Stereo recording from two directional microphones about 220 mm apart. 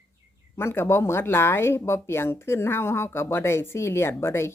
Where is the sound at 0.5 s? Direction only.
10° left (ahead or behind).